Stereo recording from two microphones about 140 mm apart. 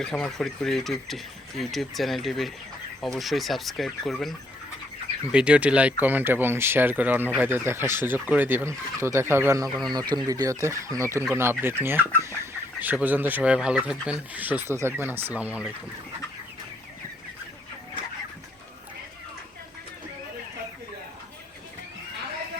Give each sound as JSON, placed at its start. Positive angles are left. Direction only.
{"t": 0.0, "sound": "speech", "side_deg": 5}